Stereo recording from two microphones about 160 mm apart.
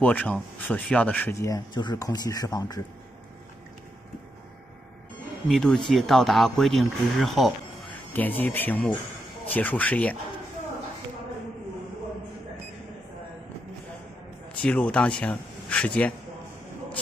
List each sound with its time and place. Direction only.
0.0 s speech: 10° left (ahead or behind)
5.5 s speech: 5° left (ahead or behind)
8.1 s speech: 10° left (ahead or behind)
14.6 s speech: 5° left (ahead or behind)